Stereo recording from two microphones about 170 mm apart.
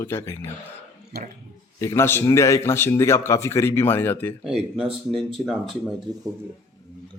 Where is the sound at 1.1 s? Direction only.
70° right (ahead or behind).